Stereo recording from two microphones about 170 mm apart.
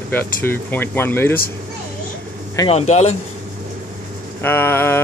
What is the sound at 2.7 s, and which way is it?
Speech, 40° left (ahead or behind).